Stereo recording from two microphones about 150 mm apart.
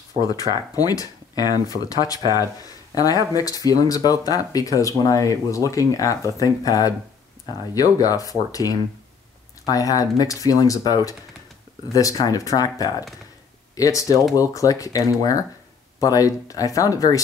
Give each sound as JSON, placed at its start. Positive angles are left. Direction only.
{"t": 0.2, "sound": "speech", "side_deg": 25}